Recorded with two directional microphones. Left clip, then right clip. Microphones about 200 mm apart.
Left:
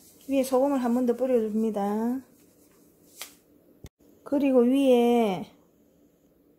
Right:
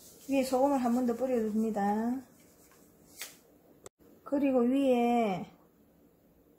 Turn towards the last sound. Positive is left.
turn(degrees=50)  # may be behind; listen again after turning